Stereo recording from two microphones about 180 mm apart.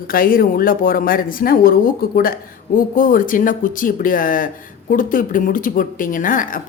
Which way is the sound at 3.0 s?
50° left (ahead or behind).